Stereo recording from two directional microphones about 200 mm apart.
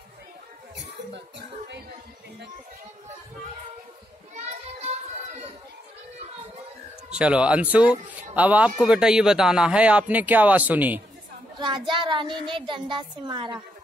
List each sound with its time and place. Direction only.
7.1 s speech: 5° right (ahead or behind)
11.5 s a child's voice: 25° right (ahead or behind)